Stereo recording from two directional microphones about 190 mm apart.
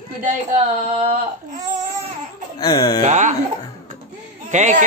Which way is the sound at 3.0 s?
40° right (ahead or behind).